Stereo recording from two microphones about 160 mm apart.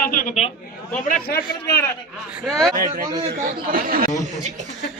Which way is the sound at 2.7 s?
60° right (ahead or behind).